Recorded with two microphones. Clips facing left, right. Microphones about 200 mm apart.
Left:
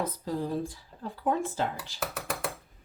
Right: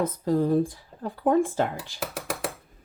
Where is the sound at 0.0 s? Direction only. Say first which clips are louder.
Right 8 dB; 50° right (ahead or behind).